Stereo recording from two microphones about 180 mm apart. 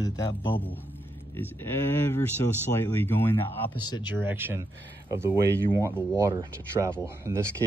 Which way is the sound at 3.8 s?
25° left (ahead or behind).